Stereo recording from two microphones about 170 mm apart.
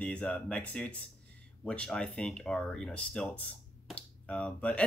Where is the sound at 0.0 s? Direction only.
5° left (ahead or behind).